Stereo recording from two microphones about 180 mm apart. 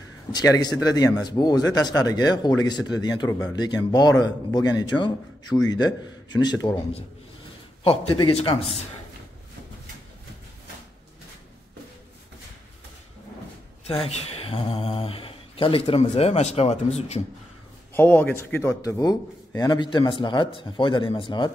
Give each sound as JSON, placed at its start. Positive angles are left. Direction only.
{"t": 0.3, "sound": "a man's voice", "side_deg": 20}
{"t": 14.0, "sound": "speech", "side_deg": 35}
{"t": 17.9, "sound": "a man's voice", "side_deg": 10}